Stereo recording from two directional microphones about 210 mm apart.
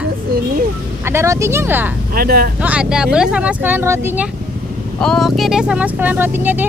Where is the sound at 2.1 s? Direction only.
45° right (ahead or behind).